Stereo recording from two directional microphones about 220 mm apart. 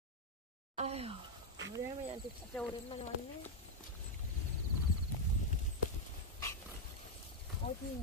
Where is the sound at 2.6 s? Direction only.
5° left (ahead or behind).